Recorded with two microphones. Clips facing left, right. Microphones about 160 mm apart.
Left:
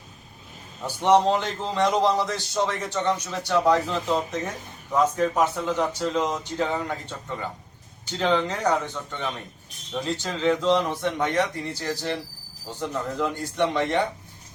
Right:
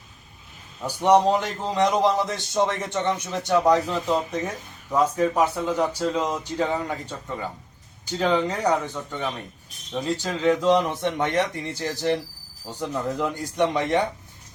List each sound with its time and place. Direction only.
0.9 s a man's voice: 10° right (ahead or behind)
8.2 s a man's voice: 10° right (ahead or behind)